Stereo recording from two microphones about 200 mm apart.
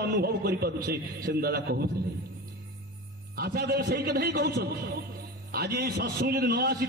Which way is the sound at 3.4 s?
50° right (ahead or behind).